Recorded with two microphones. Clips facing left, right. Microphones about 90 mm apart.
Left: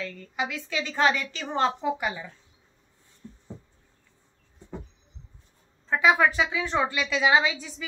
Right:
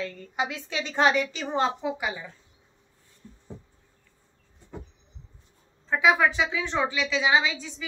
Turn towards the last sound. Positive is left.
turn(degrees=5)  # may be behind; listen again after turning